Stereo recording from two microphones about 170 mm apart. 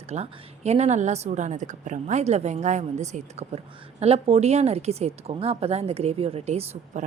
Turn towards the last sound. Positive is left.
turn(degrees=-40)  # may be behind; listen again after turning